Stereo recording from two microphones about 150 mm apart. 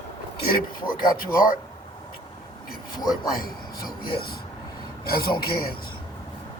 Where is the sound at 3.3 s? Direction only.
75° left (ahead or behind).